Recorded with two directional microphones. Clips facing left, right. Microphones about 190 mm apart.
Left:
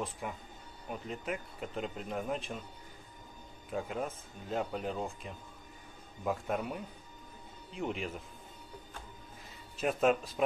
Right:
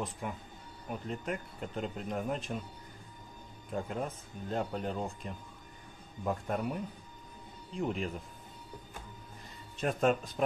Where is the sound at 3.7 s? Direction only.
Centre (ahead or behind).